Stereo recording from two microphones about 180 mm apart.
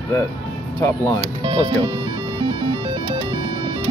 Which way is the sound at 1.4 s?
25° right (ahead or behind).